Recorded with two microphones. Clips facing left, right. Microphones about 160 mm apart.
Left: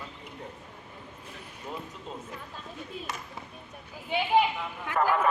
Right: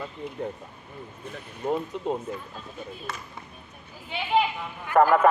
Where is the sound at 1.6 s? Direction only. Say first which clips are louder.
Right 13 dB; 50° right (ahead or behind).